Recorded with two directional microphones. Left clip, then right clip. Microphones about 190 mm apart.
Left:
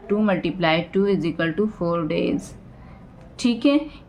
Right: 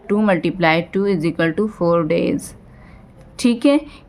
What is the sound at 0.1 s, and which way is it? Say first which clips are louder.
A woman's voice: right 5 dB; 40° right (ahead or behind).